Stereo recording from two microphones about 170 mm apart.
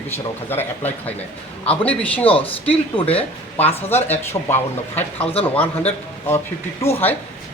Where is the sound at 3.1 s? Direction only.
10° left (ahead or behind).